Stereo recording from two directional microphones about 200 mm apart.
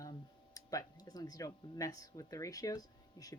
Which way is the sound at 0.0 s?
20° left (ahead or behind).